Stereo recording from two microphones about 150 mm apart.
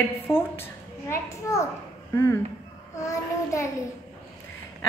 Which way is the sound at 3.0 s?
20° left (ahead or behind).